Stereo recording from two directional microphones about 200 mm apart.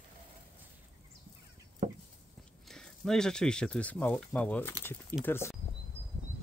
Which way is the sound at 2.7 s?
5° left (ahead or behind).